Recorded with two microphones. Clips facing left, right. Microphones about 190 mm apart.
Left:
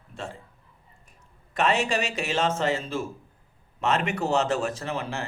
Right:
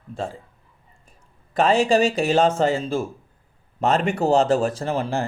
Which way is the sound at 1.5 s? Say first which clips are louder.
Right 7 dB; 30° right (ahead or behind).